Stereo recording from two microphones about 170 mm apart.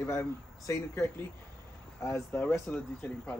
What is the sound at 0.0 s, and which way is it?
Speech, 15° left (ahead or behind).